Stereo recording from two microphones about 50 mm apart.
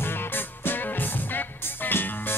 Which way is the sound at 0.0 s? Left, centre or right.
Left.